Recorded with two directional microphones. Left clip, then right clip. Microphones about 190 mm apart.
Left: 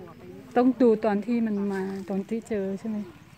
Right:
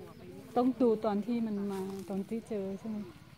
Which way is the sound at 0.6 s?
35° left (ahead or behind).